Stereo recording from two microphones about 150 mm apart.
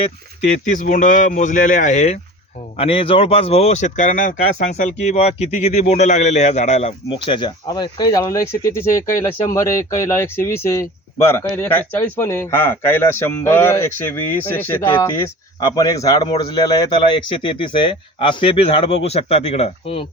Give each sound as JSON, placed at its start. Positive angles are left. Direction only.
{"t": 0.6, "sound": "speech", "side_deg": 60}
{"t": 2.7, "sound": "speech", "side_deg": 40}
{"t": 7.3, "sound": "speech", "side_deg": 30}
{"t": 15.6, "sound": "speech", "side_deg": 25}